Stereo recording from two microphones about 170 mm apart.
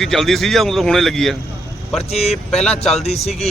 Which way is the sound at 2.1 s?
40° left (ahead or behind).